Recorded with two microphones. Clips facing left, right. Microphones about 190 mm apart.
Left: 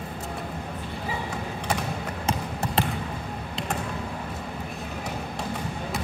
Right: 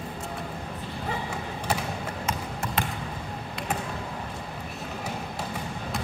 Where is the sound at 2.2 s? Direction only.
30° left (ahead or behind).